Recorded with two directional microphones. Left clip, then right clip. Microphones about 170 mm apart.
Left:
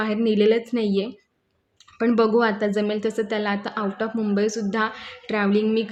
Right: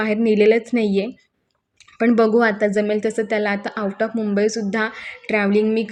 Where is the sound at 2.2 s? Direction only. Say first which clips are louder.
Right 3 dB; 20° right (ahead or behind).